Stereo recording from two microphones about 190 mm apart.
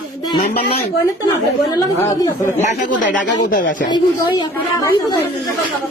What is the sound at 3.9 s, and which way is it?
A man's voice, 25° left (ahead or behind).